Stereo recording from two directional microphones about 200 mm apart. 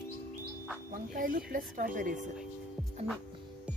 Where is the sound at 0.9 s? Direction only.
40° right (ahead or behind).